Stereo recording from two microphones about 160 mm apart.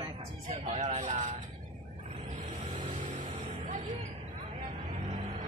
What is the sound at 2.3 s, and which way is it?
Music, 45° right (ahead or behind).